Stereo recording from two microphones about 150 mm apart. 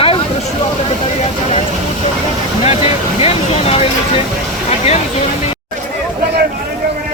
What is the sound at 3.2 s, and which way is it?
Speech, 45° left (ahead or behind).